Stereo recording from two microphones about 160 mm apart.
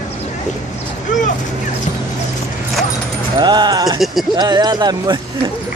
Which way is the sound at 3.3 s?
25° right (ahead or behind).